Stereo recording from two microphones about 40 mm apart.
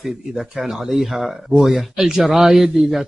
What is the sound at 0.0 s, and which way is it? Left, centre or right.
Speech, centre.